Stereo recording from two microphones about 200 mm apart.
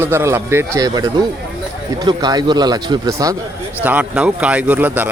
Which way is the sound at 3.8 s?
5° right (ahead or behind).